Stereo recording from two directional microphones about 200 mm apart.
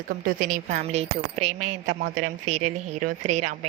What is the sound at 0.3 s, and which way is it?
A woman's voice, 40° right (ahead or behind).